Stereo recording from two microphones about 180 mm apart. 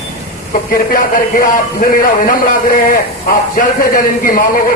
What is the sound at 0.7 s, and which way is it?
Speech, 50° left (ahead or behind).